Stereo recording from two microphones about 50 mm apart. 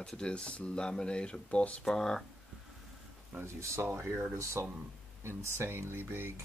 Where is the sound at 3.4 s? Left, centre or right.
Right.